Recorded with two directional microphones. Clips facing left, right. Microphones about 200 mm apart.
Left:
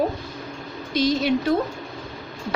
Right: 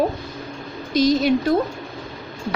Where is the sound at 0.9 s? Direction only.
40° right (ahead or behind).